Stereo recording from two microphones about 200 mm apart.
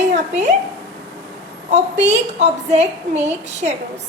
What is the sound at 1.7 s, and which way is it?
A woman's voice, 35° right (ahead or behind).